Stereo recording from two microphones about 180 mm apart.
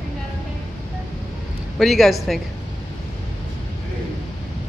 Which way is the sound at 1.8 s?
Centre (ahead or behind).